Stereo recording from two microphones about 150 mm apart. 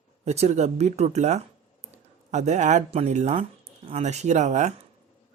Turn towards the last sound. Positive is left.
turn(degrees=-50)  # may be behind; listen again after turning